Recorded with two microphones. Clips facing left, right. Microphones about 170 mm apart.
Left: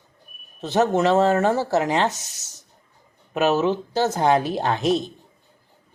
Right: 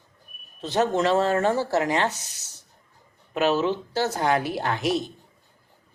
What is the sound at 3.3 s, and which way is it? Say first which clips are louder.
A woman's voice: left 3 dB; 20° left (ahead or behind).